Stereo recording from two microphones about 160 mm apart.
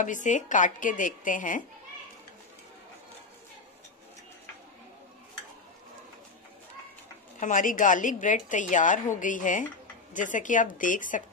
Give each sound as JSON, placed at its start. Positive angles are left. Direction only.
{"t": 0.0, "sound": "speech", "side_deg": 50}
{"t": 7.3, "sound": "a woman's voice", "side_deg": 55}